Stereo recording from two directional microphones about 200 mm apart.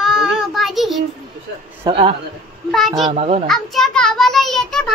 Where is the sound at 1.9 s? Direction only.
30° right (ahead or behind).